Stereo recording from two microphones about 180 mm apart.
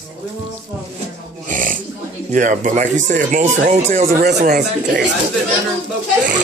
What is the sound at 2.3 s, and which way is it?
Speech, 45° right (ahead or behind).